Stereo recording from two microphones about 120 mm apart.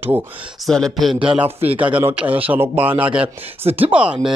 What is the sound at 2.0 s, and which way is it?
A man's voice, 15° right (ahead or behind).